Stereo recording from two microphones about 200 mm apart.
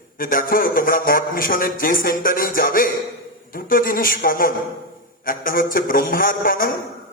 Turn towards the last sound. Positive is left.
turn(degrees=45)  # may be behind; listen again after turning